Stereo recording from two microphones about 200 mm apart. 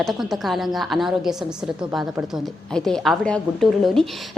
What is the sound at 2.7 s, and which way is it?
A woman's voice, centre (ahead or behind).